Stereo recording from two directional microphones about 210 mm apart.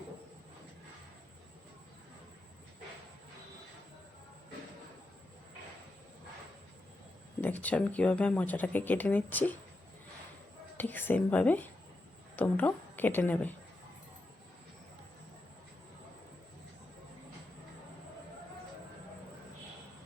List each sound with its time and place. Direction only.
7.4 s speech: 10° left (ahead or behind)
10.8 s speech: 10° left (ahead or behind)